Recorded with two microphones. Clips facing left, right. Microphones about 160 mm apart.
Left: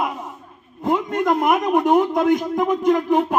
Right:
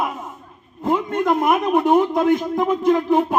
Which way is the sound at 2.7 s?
10° left (ahead or behind).